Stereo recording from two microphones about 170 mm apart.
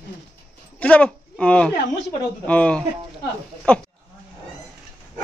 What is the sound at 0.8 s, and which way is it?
Speech, 10° left (ahead or behind).